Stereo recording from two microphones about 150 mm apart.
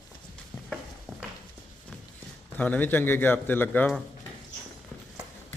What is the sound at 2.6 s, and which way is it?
A man's voice, 10° left (ahead or behind).